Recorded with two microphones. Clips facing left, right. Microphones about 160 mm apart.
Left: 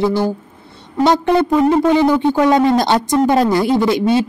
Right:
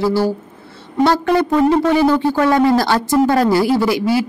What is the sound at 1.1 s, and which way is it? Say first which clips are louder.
Speech: left 2 dB; 20° left (ahead or behind).